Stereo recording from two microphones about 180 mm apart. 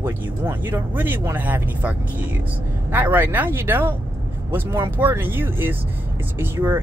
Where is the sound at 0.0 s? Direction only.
10° right (ahead or behind).